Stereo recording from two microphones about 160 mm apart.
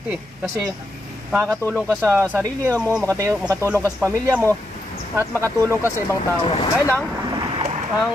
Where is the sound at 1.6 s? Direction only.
10° left (ahead or behind).